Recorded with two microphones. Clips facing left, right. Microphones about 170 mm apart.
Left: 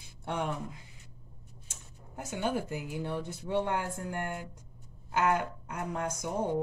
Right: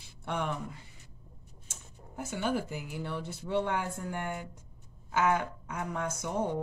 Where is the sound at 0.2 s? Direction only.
15° left (ahead or behind).